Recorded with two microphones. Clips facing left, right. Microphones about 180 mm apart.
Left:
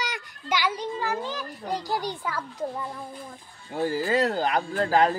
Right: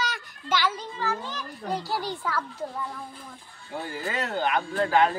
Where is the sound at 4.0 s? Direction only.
35° left (ahead or behind).